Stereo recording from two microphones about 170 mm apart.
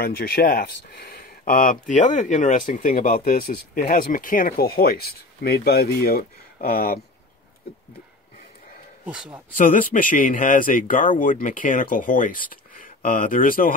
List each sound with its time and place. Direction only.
0.0 s speech: 65° left (ahead or behind)
9.0 s speech: 10° right (ahead or behind)
9.6 s speech: 55° left (ahead or behind)